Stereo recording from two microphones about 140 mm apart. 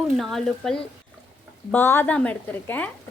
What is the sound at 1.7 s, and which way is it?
Speech, 15° left (ahead or behind).